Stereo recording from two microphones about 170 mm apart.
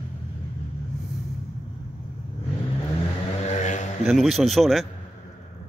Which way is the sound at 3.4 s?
45° left (ahead or behind).